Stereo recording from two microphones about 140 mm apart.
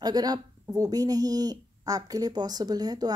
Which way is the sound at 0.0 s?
30° right (ahead or behind).